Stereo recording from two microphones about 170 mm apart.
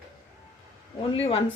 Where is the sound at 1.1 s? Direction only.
35° left (ahead or behind).